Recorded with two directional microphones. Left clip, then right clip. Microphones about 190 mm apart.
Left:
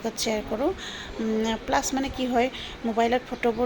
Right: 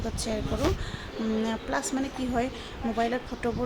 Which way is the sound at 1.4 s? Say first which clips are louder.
Left 5 dB; centre (ahead or behind).